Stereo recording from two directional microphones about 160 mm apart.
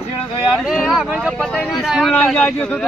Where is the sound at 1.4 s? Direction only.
5° left (ahead or behind).